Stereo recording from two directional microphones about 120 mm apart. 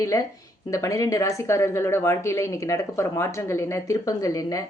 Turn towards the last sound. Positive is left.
turn(degrees=30)  # may be behind; listen again after turning